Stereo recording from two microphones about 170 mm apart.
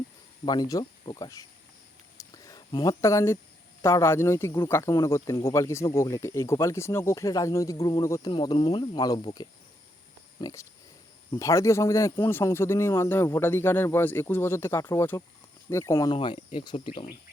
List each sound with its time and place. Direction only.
0.4 s speech: 25° left (ahead or behind)
2.1 s a sound: 20° left (ahead or behind)
3.8 s speech: 15° left (ahead or behind)
16.1 s speech: 30° left (ahead or behind)